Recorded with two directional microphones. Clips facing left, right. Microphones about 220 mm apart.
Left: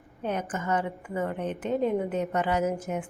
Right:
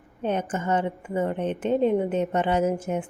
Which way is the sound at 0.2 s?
25° right (ahead or behind).